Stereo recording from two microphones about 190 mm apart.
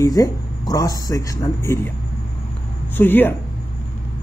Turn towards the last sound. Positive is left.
turn(degrees=10)  # may be behind; listen again after turning